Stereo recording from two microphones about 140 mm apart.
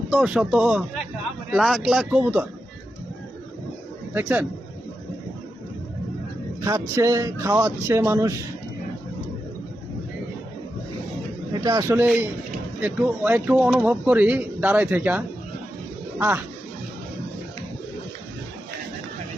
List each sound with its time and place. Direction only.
0.1 s a man's voice: 5° right (ahead or behind)
4.1 s speech: 10° right (ahead or behind)
6.7 s speech: 20° right (ahead or behind)
11.6 s speech: 20° right (ahead or behind)